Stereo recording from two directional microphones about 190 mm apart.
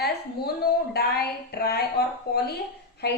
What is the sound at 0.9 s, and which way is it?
A woman's voice, 55° left (ahead or behind).